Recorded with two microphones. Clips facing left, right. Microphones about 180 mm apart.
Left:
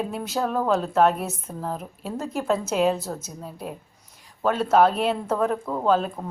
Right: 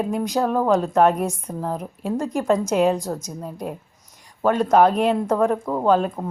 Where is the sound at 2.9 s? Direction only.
15° right (ahead or behind).